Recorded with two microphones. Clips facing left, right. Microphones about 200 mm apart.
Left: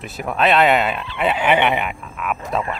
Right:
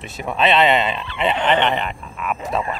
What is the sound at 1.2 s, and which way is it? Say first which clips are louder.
Speech: left 1 dB; 5° left (ahead or behind).